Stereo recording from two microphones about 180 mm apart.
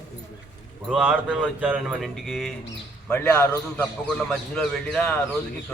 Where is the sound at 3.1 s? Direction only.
10° left (ahead or behind).